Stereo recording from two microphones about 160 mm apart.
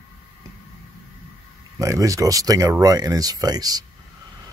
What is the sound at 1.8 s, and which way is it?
Speech, 20° right (ahead or behind).